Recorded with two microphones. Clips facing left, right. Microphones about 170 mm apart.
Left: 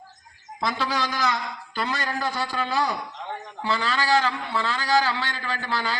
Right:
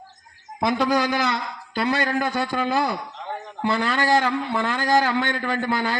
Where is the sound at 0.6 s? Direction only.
55° right (ahead or behind).